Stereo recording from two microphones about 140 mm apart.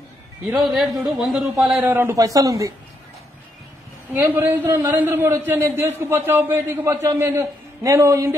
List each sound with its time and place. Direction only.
0.5 s speech: centre (ahead or behind)
1.8 s speech: 15° right (ahead or behind)
4.1 s a man's voice: 15° right (ahead or behind)